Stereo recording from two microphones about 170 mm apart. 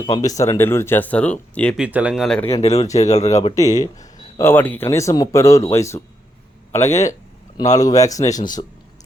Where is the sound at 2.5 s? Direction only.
35° left (ahead or behind).